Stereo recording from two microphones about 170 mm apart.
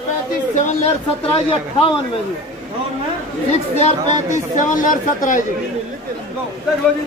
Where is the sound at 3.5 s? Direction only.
40° left (ahead or behind).